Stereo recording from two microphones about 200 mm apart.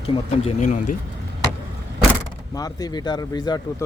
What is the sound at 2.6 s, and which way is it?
Speech, 20° left (ahead or behind).